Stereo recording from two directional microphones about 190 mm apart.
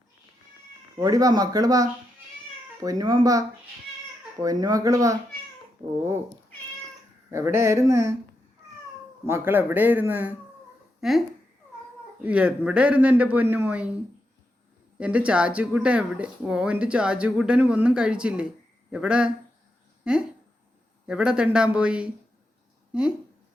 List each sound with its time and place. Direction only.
0.9 s speech: 20° right (ahead or behind)
7.3 s speech: 15° right (ahead or behind)
9.2 s speech: 10° right (ahead or behind)
12.2 s speech: 5° right (ahead or behind)
14.9 s speech: 5° right (ahead or behind)